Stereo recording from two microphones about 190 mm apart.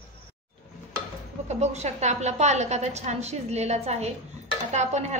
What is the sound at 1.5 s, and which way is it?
A woman's voice, 35° right (ahead or behind).